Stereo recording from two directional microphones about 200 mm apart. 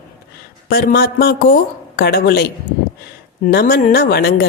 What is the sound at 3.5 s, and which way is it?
Speech, 50° left (ahead or behind).